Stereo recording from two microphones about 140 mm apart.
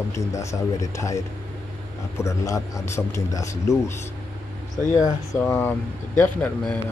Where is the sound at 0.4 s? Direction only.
20° left (ahead or behind).